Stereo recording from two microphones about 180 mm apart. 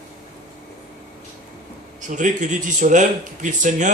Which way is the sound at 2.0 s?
45° right (ahead or behind).